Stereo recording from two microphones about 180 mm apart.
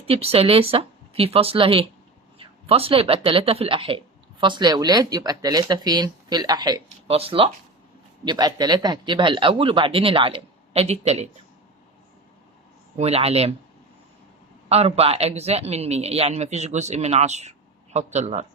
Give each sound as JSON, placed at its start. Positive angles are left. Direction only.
{"t": 0.0, "sound": "a man's voice", "side_deg": -30}
{"t": 13.0, "sound": "a man's voice", "side_deg": -35}
{"t": 14.7, "sound": "a man's voice", "side_deg": -35}